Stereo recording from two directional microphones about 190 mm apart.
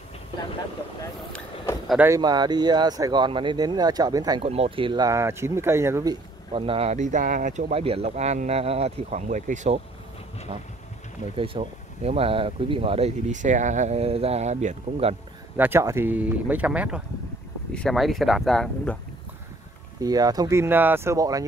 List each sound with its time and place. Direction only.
1.9 s speech: 10° right (ahead or behind)
4.5 s speech: 30° right (ahead or behind); by 6.1 s 15° right (ahead or behind)
6.5 s speech: 30° right (ahead or behind)
10.5 s speech: 30° right (ahead or behind)
15.5 s speech: 10° right (ahead or behind)
20.0 s speech: 20° right (ahead or behind)